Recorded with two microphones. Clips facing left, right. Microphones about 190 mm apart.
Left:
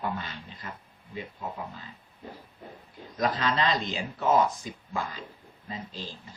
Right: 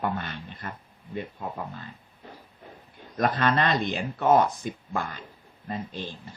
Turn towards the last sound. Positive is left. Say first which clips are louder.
# right 5 dB
turn(degrees=-55)  # may be behind; listen again after turning